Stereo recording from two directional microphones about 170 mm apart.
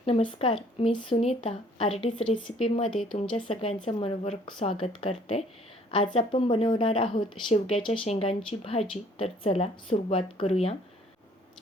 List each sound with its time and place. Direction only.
0.0 s speech: 30° left (ahead or behind)